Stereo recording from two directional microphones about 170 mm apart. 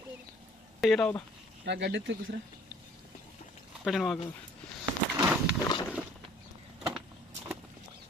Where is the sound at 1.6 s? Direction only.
90° right.